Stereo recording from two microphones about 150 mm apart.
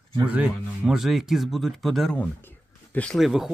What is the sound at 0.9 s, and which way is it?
Speech, centre (ahead or behind).